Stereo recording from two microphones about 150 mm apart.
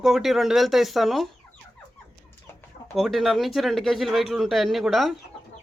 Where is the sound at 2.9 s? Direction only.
Centre (ahead or behind).